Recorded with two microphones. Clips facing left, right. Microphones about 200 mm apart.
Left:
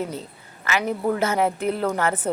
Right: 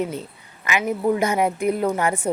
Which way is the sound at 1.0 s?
15° right (ahead or behind).